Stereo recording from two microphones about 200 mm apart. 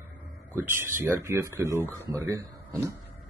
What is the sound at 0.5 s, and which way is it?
Speech, 10° right (ahead or behind).